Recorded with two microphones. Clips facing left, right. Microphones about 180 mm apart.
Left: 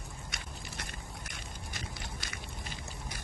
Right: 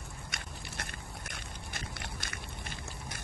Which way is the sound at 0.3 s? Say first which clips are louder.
Right 1 dB; 55° right (ahead or behind).